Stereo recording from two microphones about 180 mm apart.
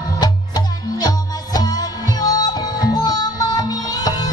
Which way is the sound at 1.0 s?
20° left (ahead or behind).